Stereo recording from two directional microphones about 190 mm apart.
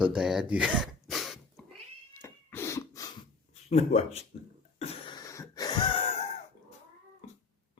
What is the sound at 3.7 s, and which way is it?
Speech, 35° left (ahead or behind).